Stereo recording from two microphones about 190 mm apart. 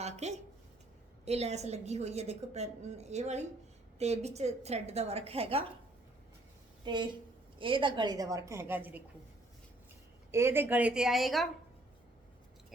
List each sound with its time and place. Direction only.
0.0 s a sound: 35° right (ahead or behind)
1.2 s a woman's voice: 35° right (ahead or behind)
6.8 s a woman's voice: 25° right (ahead or behind)
10.3 s a woman's voice: 15° right (ahead or behind)